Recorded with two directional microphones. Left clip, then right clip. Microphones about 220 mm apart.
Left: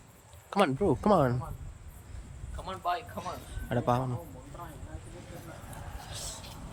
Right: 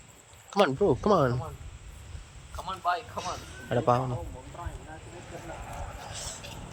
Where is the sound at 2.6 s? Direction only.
20° right (ahead or behind).